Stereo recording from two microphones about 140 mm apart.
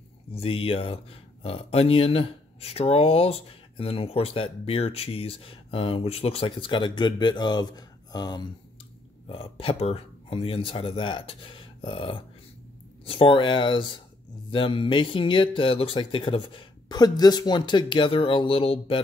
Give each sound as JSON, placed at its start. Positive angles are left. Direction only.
{"t": 0.3, "sound": "speech", "side_deg": 40}
{"t": 9.3, "sound": "speech", "side_deg": 40}